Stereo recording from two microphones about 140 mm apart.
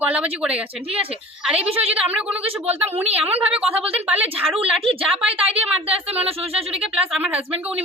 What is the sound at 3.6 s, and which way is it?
Speech, 45° right (ahead or behind).